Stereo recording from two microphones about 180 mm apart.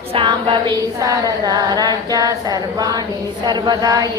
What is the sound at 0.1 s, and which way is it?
Female singing, 30° right (ahead or behind).